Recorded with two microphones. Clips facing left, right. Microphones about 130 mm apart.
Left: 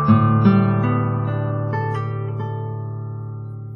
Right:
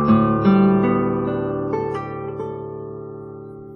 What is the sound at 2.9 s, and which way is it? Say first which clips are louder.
Music: right 4 dB; 15° right (ahead or behind).